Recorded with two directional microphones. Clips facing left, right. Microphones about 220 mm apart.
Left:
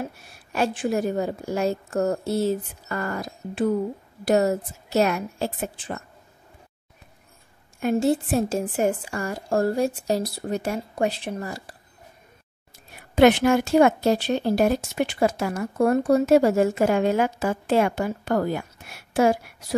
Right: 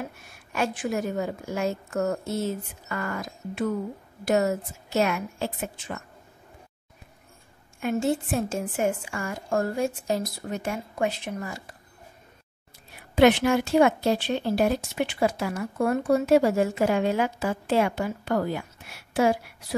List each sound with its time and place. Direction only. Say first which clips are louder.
0.0 s a woman's voice: left 3 dB; 35° left (ahead or behind)
7.8 s a woman's voice: left 4 dB; 35° left (ahead or behind)
13.1 s speech: left 2 dB; 45° left (ahead or behind)